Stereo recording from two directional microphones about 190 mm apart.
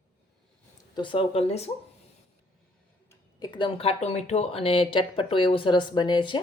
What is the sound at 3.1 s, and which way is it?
Speech, 20° left (ahead or behind).